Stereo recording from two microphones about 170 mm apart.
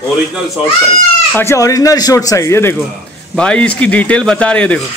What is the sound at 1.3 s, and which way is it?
Speech, 15° left (ahead or behind).